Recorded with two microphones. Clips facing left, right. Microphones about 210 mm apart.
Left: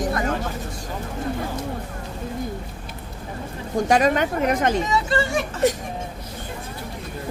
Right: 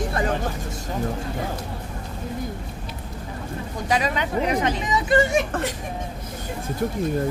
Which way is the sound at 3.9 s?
50° left (ahead or behind).